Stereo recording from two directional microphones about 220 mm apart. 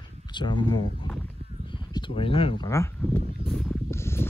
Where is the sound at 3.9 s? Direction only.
10° left (ahead or behind).